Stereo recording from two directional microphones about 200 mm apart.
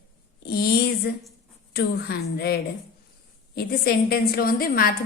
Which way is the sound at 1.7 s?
50° left (ahead or behind).